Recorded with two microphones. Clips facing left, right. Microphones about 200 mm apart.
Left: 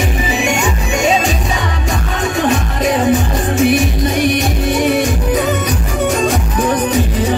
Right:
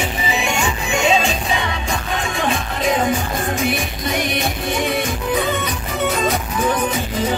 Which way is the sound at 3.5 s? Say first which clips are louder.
Left 9 dB; 90° left.